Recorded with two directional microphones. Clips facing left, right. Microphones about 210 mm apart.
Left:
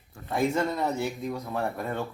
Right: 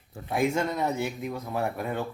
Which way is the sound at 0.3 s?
5° right (ahead or behind).